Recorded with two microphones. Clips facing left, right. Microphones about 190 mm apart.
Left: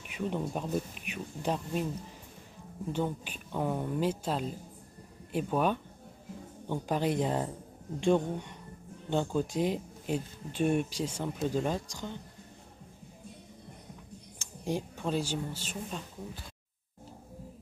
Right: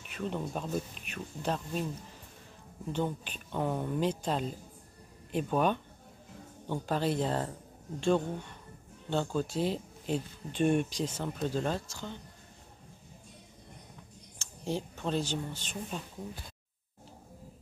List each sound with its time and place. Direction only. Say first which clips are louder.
0.1 s speech: left 2 dB; 10° left (ahead or behind)
2.9 s speech: even; 10° left (ahead or behind)
14.4 s speech: left 1 dB; 15° left (ahead or behind)